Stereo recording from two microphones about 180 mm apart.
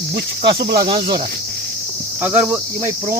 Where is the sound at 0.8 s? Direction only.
25° right (ahead or behind).